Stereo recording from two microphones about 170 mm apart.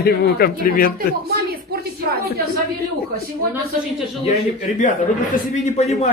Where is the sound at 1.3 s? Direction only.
65° right (ahead or behind).